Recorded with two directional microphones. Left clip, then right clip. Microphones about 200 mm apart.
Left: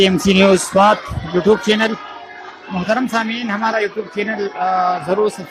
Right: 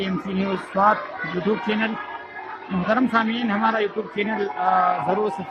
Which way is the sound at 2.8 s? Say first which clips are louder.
Left 3 dB; 10° left (ahead or behind).